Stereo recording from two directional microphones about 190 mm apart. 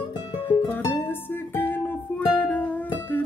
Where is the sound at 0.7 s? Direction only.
10° left (ahead or behind).